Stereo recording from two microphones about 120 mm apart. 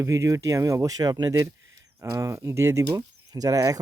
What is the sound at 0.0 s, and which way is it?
Speech, 25° right (ahead or behind).